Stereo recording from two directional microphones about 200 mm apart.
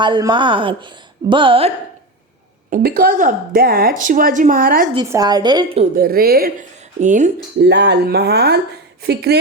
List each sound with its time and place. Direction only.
0.0 s speech: 20° right (ahead or behind)
2.6 s a woman's voice: 45° right (ahead or behind)
5.0 s speech: 15° right (ahead or behind)
5.9 s a woman's voice: 50° right (ahead or behind)
7.0 s speech: 35° right (ahead or behind)
7.6 s a woman's voice: 60° right (ahead or behind)